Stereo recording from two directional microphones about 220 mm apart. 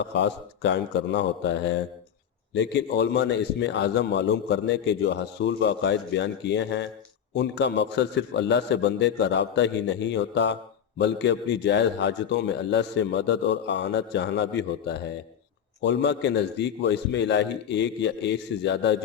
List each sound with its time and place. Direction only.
0.0 s a man's voice: 55° left (ahead or behind)